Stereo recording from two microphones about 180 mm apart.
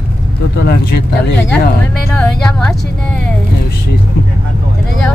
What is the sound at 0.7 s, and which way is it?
Speech, 60° left (ahead or behind).